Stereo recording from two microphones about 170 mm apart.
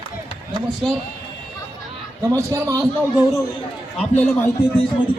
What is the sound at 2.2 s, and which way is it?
Speech, 20° right (ahead or behind).